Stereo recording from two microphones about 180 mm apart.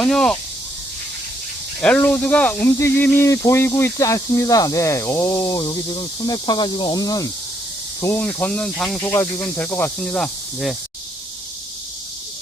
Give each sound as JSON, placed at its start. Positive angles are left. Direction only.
{"t": 0.0, "sound": "speech", "side_deg": 5}
{"t": 1.8, "sound": "speech", "side_deg": 10}